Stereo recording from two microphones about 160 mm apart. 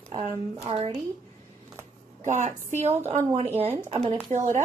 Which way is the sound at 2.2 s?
50° right (ahead or behind).